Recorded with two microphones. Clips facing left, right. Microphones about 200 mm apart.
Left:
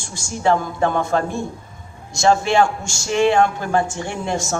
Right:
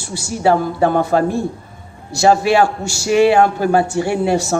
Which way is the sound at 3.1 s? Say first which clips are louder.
Right 5 dB; 10° right (ahead or behind).